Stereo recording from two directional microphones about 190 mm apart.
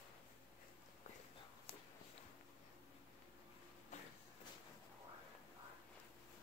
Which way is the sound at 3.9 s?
40° left (ahead or behind).